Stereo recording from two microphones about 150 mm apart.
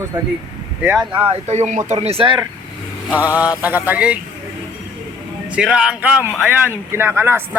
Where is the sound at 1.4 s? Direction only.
50° right (ahead or behind); by 2.5 s 35° right (ahead or behind).